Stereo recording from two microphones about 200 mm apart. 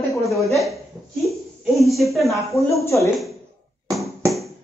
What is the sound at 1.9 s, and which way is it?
Speech, centre (ahead or behind).